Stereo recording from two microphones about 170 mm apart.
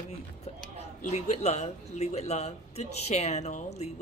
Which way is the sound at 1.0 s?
40° left (ahead or behind).